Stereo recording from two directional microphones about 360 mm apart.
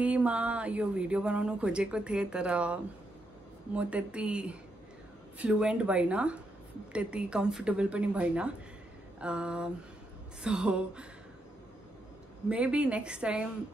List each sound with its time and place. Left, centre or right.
0.0 s speech: centre
12.4 s speech: centre